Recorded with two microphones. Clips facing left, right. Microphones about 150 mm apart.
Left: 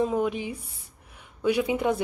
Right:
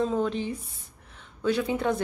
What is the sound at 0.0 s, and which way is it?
Speech, 10° left (ahead or behind).